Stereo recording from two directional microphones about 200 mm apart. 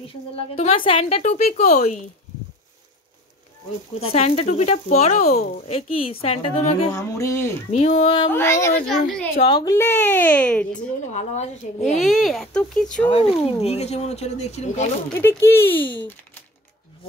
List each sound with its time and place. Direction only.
0.6 s speech: 25° left (ahead or behind)
4.0 s a woman's voice: 30° left (ahead or behind)
7.0 s speech: 15° left (ahead or behind)
7.7 s a woman's voice: 30° left (ahead or behind)
8.3 s speech: 10° left (ahead or behind)
8.8 s speech: centre (ahead or behind)
9.4 s speech: 20° left (ahead or behind); by 10.8 s 5° left (ahead or behind)
11.1 s speech: 35° left (ahead or behind)
12.0 s speech: centre (ahead or behind)
13.1 s speech: 30° left (ahead or behind)
15.1 s speech: 10° left (ahead or behind)